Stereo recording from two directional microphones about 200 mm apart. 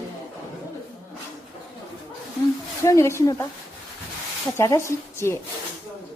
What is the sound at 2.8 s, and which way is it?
Speech, 15° left (ahead or behind).